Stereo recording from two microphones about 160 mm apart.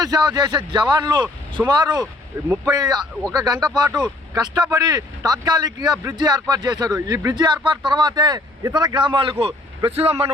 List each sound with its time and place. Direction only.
0.0 s speech: 25° right (ahead or behind)